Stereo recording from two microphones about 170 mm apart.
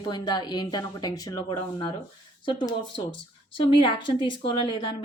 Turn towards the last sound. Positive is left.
turn(degrees=30)  # may be behind; listen again after turning